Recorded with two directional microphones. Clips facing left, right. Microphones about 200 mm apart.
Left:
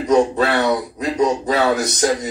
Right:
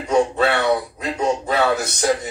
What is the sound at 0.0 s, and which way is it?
Speech, 40° left (ahead or behind).